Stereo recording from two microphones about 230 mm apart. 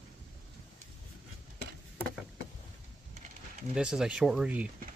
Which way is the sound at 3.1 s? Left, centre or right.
Right.